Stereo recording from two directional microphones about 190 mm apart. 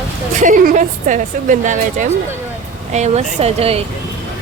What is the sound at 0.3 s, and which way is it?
A woman's voice, 45° right (ahead or behind).